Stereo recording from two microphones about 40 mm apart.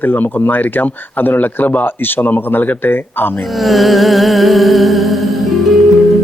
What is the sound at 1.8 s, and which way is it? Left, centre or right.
Speech, left.